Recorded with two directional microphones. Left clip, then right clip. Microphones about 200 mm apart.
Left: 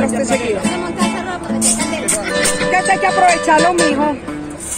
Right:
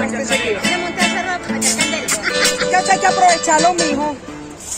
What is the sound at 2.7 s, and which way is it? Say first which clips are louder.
Music: left 2 dB; 10° right (ahead or behind).